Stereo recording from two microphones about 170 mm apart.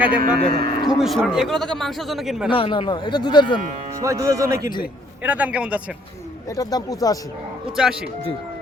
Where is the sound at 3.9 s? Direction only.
20° right (ahead or behind).